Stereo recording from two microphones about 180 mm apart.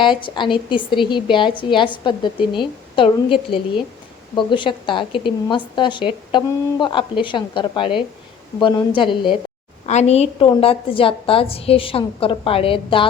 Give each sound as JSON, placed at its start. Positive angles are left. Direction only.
{"t": 0.0, "sound": "a woman's voice", "side_deg": 25}
{"t": 9.8, "sound": "a woman's voice", "side_deg": 40}